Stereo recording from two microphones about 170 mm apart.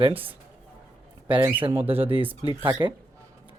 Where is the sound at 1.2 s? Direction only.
30° right (ahead or behind).